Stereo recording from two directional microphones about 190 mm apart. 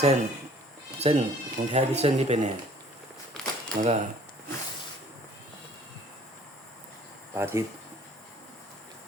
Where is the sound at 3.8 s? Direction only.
45° right (ahead or behind).